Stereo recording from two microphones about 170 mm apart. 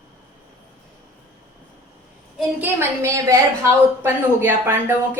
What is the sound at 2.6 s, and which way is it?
A woman's voice, 15° right (ahead or behind).